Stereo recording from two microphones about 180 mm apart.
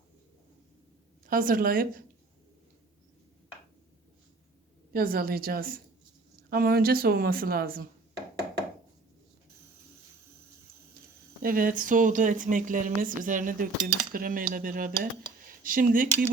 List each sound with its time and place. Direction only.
1.3 s speech: 50° right (ahead or behind)
4.9 s a woman's voice: 50° right (ahead or behind)
11.4 s speech: 50° right (ahead or behind)